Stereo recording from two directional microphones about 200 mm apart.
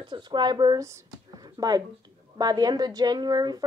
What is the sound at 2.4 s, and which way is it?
A woman's voice, 20° right (ahead or behind).